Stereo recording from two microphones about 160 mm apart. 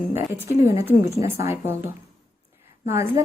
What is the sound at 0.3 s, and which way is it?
Speech, 15° right (ahead or behind).